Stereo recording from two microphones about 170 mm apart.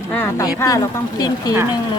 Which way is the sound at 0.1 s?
15° left (ahead or behind).